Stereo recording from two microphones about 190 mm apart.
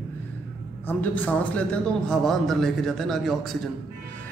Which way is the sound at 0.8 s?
10° left (ahead or behind).